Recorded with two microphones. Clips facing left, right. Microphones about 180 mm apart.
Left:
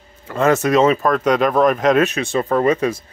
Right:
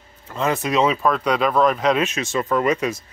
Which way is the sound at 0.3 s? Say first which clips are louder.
Left 6 dB; 50° left (ahead or behind).